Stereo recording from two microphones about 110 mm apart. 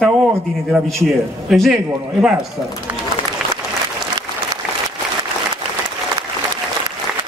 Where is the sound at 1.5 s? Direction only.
Centre (ahead or behind).